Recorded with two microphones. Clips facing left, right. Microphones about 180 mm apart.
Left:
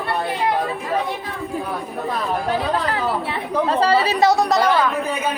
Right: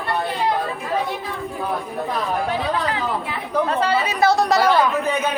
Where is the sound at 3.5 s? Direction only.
30° left (ahead or behind).